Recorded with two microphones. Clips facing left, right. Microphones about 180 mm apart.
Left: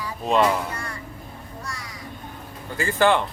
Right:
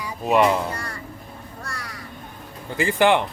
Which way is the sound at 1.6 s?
65° right (ahead or behind).